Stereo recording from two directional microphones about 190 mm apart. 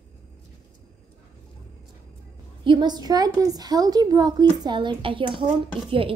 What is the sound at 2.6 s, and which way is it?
A woman's voice, 25° right (ahead or behind).